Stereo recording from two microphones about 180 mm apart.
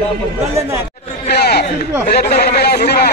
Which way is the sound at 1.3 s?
65° left (ahead or behind).